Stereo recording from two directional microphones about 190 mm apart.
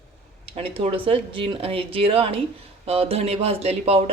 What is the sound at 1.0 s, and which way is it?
A woman's voice, 30° right (ahead or behind).